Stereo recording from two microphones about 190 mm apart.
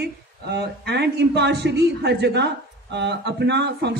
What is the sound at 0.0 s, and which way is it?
Speech, 60° right (ahead or behind).